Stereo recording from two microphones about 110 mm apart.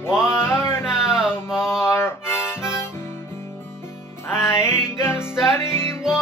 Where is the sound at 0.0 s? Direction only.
20° left (ahead or behind).